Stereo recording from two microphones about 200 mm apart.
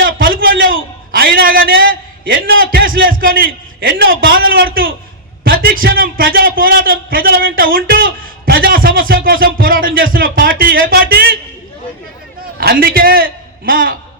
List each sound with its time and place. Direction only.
0.0 s a sound: 45° right (ahead or behind)
1.1 s a man's voice: 45° right (ahead or behind)
12.5 s a man's voice: 50° right (ahead or behind)